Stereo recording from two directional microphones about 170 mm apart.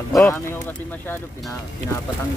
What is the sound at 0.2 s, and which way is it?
Speech, 15° left (ahead or behind).